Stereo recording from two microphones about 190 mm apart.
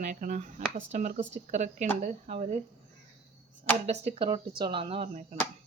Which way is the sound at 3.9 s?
30° right (ahead or behind).